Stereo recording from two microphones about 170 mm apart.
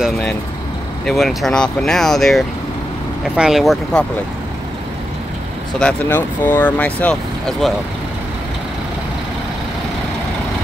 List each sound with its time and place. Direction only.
1.0 s speech: centre (ahead or behind)
5.8 s speech: 10° left (ahead or behind)